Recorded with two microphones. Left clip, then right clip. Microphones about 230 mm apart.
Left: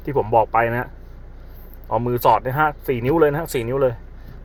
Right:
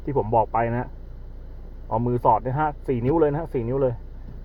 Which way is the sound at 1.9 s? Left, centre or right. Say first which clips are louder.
Left 3 dB; left.